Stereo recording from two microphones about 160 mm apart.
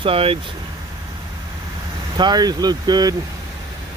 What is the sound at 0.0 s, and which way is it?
Speech, 35° right (ahead or behind).